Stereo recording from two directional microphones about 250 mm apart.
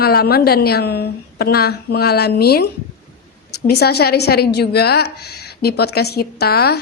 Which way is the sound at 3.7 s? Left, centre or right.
Left.